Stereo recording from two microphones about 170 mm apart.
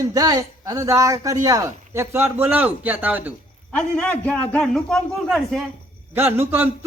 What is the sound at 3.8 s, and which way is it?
Speech, 5° left (ahead or behind).